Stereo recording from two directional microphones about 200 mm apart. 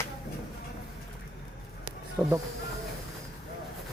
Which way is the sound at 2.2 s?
5° right (ahead or behind).